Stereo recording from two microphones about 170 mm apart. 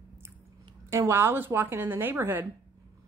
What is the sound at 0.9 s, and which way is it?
A woman's voice, 15° right (ahead or behind).